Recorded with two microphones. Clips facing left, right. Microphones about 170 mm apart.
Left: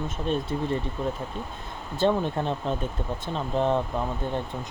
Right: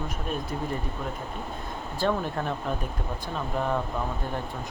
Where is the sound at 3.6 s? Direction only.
25° left (ahead or behind).